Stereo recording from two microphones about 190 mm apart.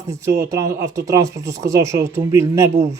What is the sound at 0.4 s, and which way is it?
Speech, 15° right (ahead or behind).